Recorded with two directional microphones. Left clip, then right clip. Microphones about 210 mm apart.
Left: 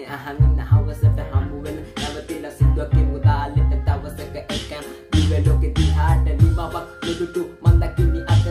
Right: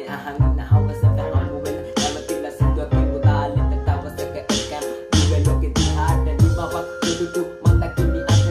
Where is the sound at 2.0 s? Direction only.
50° right (ahead or behind).